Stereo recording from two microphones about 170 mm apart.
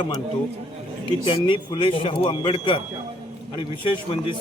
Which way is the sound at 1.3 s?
30° left (ahead or behind).